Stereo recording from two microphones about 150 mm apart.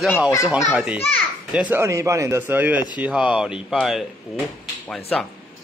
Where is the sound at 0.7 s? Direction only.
5° right (ahead or behind).